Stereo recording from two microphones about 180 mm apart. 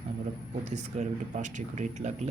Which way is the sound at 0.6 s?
40° right (ahead or behind).